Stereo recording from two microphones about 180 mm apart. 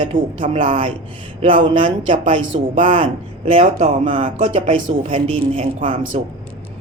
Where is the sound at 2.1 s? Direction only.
30° right (ahead or behind).